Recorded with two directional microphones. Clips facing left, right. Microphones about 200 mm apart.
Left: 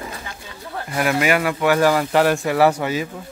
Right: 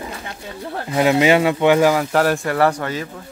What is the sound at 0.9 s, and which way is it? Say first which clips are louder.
Speech: right 5 dB; 20° right (ahead or behind).